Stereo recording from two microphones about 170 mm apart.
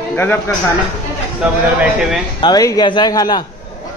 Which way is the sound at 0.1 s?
15° left (ahead or behind).